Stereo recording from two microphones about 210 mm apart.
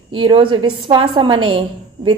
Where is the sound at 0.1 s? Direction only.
25° right (ahead or behind).